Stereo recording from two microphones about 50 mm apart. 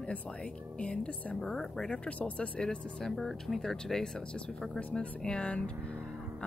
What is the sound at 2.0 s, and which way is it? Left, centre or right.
Speech, left.